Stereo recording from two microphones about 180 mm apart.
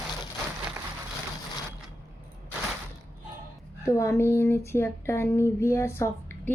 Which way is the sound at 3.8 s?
15° left (ahead or behind).